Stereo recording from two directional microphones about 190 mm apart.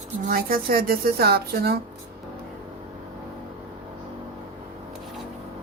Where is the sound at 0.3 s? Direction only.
50° right (ahead or behind).